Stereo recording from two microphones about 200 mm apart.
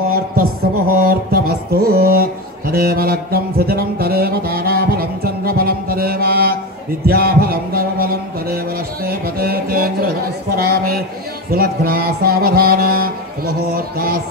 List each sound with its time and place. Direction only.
0.1 s a sound: 50° right (ahead or behind)
1.9 s mantra: 50° right (ahead or behind)
7.1 s music: 50° right (ahead or behind)
9.0 s speech: 50° right (ahead or behind)
11.5 s music: 50° right (ahead or behind)